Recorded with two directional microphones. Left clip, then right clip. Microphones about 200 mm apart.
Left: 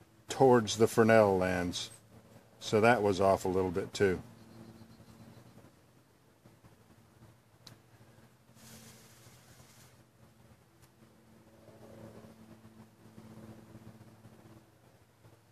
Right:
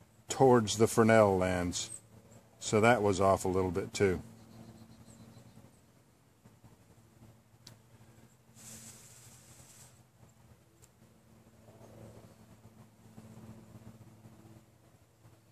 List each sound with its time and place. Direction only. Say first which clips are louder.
0.3 s speech: even; 25° right (ahead or behind)